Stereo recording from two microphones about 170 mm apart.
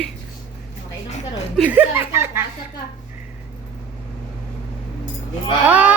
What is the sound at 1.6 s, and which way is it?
Speech, 10° right (ahead or behind).